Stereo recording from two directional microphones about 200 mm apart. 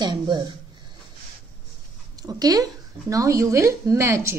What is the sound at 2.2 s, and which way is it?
Speech, 20° right (ahead or behind).